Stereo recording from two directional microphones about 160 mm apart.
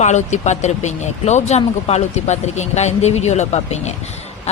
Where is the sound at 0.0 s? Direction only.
45° left (ahead or behind).